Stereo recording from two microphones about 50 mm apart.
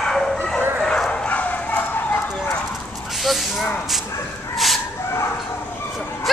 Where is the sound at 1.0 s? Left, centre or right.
Left.